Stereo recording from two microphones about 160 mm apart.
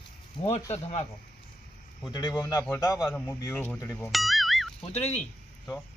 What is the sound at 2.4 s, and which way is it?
Speech, 25° left (ahead or behind).